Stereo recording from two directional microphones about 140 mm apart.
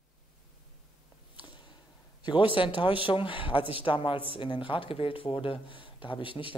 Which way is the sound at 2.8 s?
40° left (ahead or behind).